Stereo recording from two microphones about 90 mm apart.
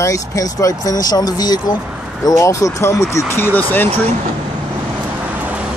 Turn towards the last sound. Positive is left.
turn(degrees=20)  # may be behind; listen again after turning